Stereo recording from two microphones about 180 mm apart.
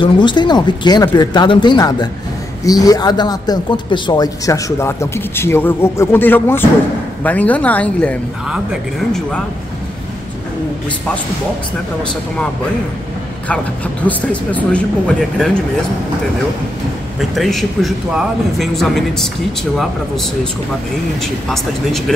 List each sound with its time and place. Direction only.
0.0 s speech: 25° left (ahead or behind); by 8.2 s 5° left (ahead or behind)
14.0 s speech: 10° left (ahead or behind)
17.2 s a man's voice: centre (ahead or behind)
21.5 s a man's voice: centre (ahead or behind)